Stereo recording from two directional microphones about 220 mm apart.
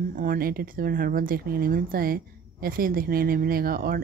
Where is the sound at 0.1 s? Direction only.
40° right (ahead or behind).